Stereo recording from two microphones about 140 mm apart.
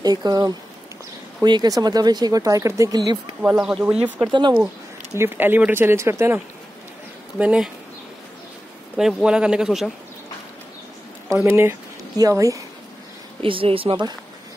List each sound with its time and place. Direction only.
0.0 s speech: 25° right (ahead or behind)
3.8 s speech: 10° right (ahead or behind)
4.3 s speech: 35° right (ahead or behind)
5.1 s speech: 15° right (ahead or behind)
8.9 s a man's voice: 5° right (ahead or behind)
11.3 s speech: 15° right (ahead or behind)
13.4 s speech: 40° right (ahead or behind)